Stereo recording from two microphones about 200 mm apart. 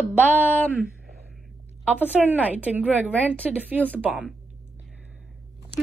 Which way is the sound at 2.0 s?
5° right (ahead or behind).